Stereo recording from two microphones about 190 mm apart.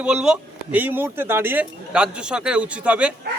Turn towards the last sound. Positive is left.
turn(degrees=-5)  # may be behind; listen again after turning